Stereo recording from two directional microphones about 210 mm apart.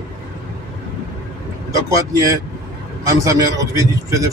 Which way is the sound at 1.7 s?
15° right (ahead or behind).